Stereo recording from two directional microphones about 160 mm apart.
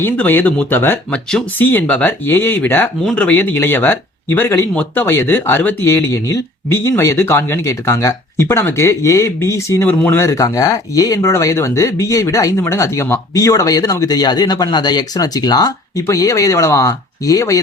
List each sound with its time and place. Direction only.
0.0 s speech: 10° left (ahead or behind)